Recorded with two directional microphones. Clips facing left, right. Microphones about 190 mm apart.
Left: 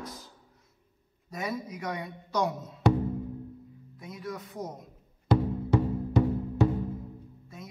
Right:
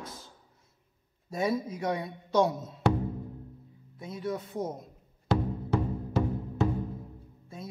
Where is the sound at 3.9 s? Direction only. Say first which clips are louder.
Right 5 dB; 30° right (ahead or behind).